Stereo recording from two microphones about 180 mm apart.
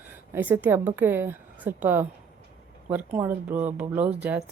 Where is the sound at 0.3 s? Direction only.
10° right (ahead or behind).